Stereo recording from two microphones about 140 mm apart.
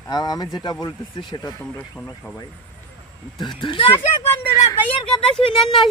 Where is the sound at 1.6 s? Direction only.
10° left (ahead or behind).